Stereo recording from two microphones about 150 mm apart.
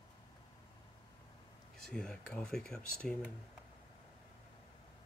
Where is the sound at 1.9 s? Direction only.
5° left (ahead or behind).